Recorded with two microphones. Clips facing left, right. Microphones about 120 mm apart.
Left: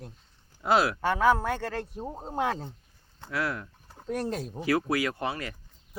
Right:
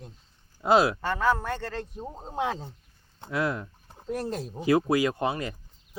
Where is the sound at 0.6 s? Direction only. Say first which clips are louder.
Right 3 dB; 20° right (ahead or behind).